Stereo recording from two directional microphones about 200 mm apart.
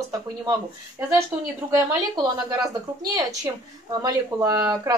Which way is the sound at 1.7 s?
20° right (ahead or behind).